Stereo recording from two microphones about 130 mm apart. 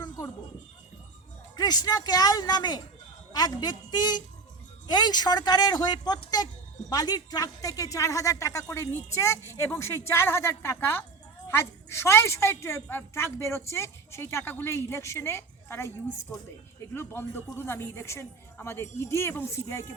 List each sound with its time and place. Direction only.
1.5 s a woman's voice: 30° left (ahead or behind)
16.9 s a woman's voice: 20° left (ahead or behind)